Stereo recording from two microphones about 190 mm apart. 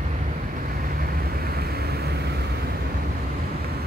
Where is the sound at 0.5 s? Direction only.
50° right (ahead or behind).